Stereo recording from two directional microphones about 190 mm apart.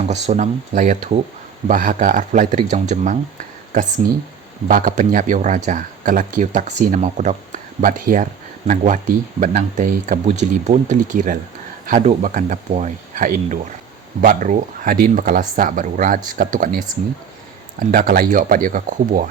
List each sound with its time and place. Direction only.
0.1 s speech: 35° right (ahead or behind)